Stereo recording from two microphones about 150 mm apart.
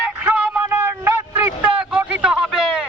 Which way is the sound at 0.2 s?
15° right (ahead or behind).